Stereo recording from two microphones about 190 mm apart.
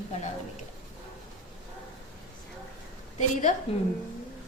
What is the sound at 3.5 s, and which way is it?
Speech, 40° left (ahead or behind).